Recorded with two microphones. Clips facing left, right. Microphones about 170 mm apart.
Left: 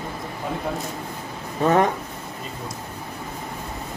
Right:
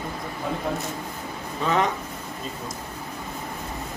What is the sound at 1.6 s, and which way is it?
Speech, 50° left (ahead or behind).